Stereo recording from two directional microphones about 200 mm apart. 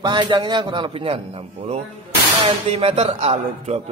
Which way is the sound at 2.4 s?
30° right (ahead or behind).